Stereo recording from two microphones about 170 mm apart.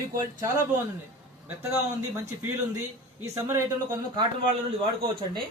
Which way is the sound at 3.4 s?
15° right (ahead or behind).